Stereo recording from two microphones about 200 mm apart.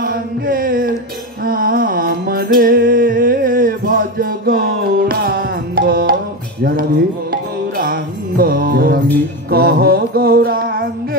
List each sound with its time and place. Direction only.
0.0 s mantra: 45° right (ahead or behind)
1.4 s music: 45° right (ahead or behind)
7.7 s music: 45° right (ahead or behind)